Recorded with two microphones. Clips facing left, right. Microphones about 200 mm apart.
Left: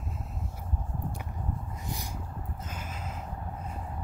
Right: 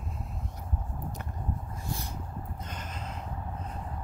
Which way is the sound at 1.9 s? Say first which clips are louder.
Right 2 dB; 15° left (ahead or behind).